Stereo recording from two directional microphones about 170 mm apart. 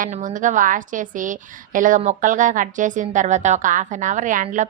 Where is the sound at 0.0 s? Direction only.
50° right (ahead or behind).